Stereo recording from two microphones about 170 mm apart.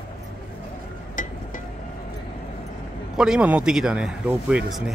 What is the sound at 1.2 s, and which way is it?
Music, 50° left (ahead or behind).